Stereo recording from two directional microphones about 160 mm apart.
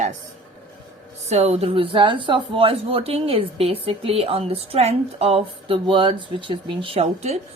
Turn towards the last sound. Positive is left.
turn(degrees=-40)  # may be behind; listen again after turning